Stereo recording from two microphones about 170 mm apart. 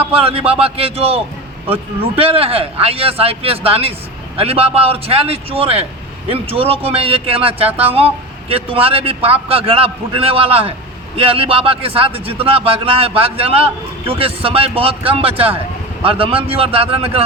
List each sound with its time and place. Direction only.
0.0 s a man's voice: 35° right (ahead or behind)